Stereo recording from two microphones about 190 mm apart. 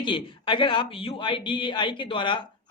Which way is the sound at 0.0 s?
25° left (ahead or behind).